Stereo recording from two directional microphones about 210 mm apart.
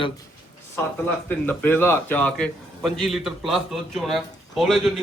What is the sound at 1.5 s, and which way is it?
A man's voice, 10° left (ahead or behind).